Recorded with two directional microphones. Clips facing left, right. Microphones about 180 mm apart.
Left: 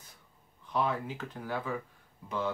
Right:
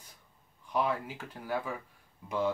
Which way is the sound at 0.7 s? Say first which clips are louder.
Even; 10° right (ahead or behind).